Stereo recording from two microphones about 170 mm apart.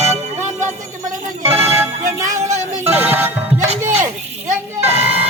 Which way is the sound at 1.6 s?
15° right (ahead or behind).